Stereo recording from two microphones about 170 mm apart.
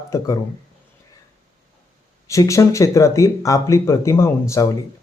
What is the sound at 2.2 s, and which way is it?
Speech, 20° left (ahead or behind).